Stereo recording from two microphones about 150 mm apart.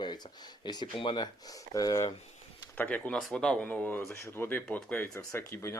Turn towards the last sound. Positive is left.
turn(degrees=15)  # may be behind; listen again after turning